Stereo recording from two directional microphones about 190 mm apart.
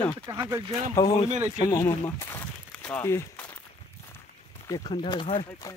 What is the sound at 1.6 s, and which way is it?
Speech, 15° left (ahead or behind).